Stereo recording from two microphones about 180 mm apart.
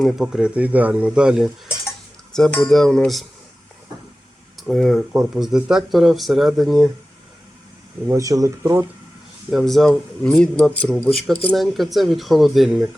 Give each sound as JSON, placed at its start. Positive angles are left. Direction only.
{"t": 0.0, "sound": "speech", "side_deg": 0}
{"t": 4.5, "sound": "speech", "side_deg": 0}
{"t": 8.0, "sound": "speech", "side_deg": -15}
{"t": 9.5, "sound": "speech", "side_deg": 0}